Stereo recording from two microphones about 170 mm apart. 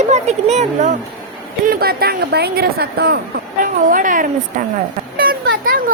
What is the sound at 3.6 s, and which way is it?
Speech, 50° right (ahead or behind).